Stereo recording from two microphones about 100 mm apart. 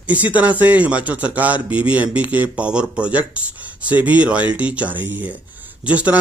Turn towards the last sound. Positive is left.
turn(degrees=-15)  # may be behind; listen again after turning